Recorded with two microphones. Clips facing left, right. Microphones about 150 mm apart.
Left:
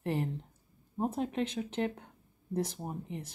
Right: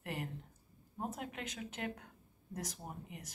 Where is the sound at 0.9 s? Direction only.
30° left (ahead or behind).